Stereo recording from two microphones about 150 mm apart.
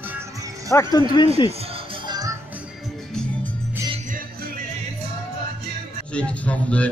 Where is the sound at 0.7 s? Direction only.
20° left (ahead or behind).